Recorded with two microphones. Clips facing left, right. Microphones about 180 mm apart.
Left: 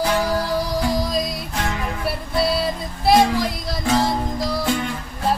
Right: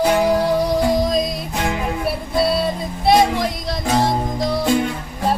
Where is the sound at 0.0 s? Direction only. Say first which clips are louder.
Right 5 dB; 25° right (ahead or behind).